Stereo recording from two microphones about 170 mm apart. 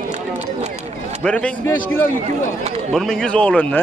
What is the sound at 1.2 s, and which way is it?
Speech, 5° left (ahead or behind).